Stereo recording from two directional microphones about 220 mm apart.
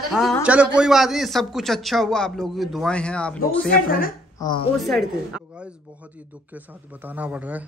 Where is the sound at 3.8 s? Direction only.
40° left (ahead or behind).